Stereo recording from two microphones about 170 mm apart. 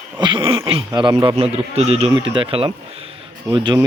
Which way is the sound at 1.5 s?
40° right (ahead or behind).